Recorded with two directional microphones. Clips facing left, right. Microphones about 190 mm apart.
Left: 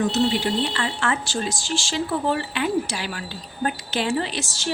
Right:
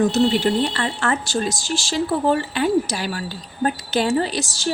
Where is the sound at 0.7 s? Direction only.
40° right (ahead or behind).